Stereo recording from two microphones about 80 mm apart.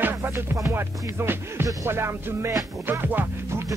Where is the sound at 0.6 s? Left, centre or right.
Right.